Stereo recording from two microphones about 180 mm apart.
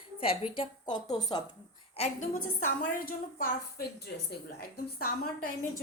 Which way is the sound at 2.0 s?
45° left (ahead or behind).